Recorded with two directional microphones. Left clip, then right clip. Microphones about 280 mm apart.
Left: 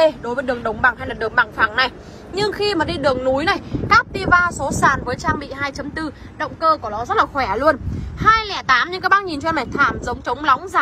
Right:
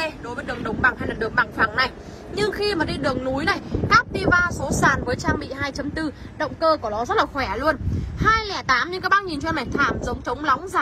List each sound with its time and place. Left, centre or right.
0.0 s speech: centre